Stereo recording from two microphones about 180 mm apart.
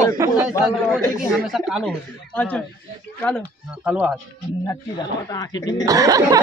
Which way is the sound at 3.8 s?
5° right (ahead or behind).